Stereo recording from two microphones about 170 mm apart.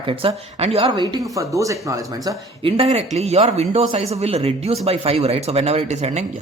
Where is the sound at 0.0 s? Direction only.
30° right (ahead or behind).